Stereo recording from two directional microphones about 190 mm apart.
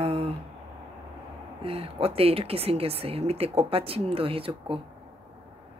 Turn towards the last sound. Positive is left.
turn(degrees=-30)  # may be behind; listen again after turning